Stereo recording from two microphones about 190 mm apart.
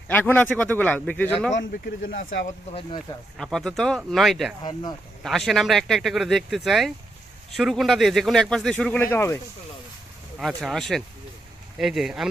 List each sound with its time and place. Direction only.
0.1 s speech: 10° left (ahead or behind)
2.1 s speech: 75° left (ahead or behind)
3.3 s speech: 5° left (ahead or behind)
4.6 s speech: 20° left (ahead or behind)
5.2 s speech: centre (ahead or behind)
10.3 s speech: centre (ahead or behind)